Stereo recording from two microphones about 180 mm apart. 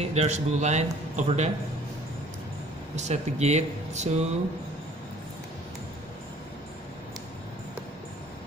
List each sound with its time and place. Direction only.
0.1 s a man's voice: 40° right (ahead or behind)
3.0 s a man's voice: 40° right (ahead or behind)